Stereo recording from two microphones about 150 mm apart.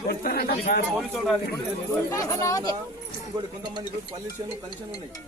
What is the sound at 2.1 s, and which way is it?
Speech, 20° left (ahead or behind).